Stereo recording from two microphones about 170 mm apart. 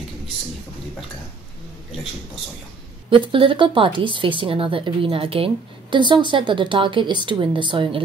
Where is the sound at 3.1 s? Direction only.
30° right (ahead or behind).